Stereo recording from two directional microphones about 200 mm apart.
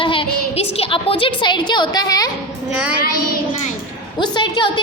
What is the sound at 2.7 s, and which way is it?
Child singing, 5° right (ahead or behind).